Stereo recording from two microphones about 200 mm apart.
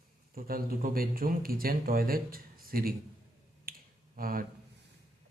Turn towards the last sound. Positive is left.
turn(degrees=-45)  # may be behind; listen again after turning